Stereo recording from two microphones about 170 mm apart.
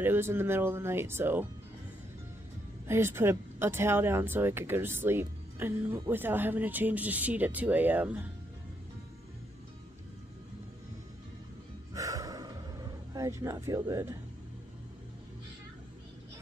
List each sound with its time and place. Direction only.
0.0 s speech: 15° right (ahead or behind)
2.9 s speech: 15° right (ahead or behind)
11.9 s music: 20° right (ahead or behind)
13.1 s speech: 20° right (ahead or behind)